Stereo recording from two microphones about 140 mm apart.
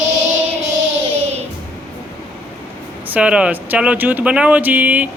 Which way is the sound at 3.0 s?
10° right (ahead or behind).